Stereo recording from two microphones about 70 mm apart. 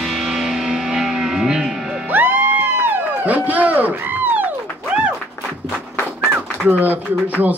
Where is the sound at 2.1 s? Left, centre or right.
Right.